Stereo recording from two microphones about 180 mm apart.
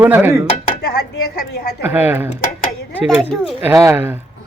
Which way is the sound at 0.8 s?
65° left (ahead or behind).